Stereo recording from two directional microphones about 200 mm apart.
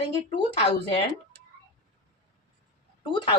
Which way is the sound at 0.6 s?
25° left (ahead or behind).